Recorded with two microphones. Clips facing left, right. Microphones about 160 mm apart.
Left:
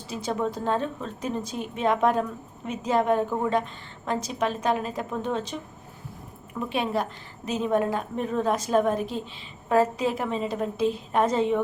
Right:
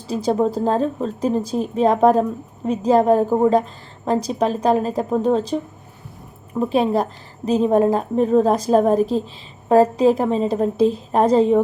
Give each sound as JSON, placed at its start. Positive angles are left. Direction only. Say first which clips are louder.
{"t": 0.1, "sound": "a woman's voice", "louder": "right 9 dB", "side_deg": -35}